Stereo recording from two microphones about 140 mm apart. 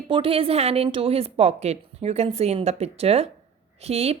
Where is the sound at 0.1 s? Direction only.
40° right (ahead or behind).